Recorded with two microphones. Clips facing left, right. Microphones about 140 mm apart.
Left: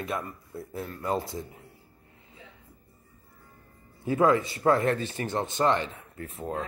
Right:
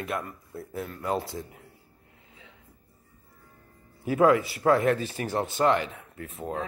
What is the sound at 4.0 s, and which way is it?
A man's voice, 10° right (ahead or behind).